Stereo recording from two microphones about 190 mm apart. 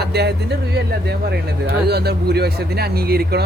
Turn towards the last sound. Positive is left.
turn(degrees=-55)  # may be behind; listen again after turning